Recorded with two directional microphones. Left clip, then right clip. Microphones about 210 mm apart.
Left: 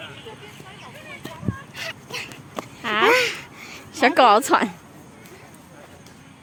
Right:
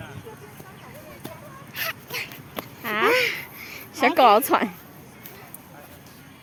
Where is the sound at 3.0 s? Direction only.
45° left (ahead or behind).